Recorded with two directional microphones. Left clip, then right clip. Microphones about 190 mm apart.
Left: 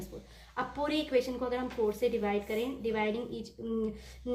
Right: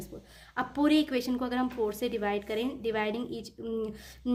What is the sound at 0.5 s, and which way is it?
A woman's voice, 50° right (ahead or behind).